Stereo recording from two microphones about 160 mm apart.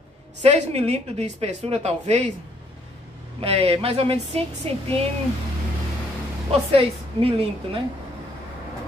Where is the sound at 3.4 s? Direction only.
40° right (ahead or behind).